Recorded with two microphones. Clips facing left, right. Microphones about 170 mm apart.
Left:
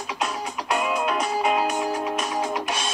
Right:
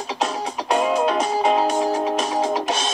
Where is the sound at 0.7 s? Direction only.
35° right (ahead or behind).